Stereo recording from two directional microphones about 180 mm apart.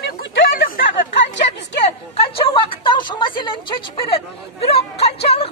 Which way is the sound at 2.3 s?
30° left (ahead or behind).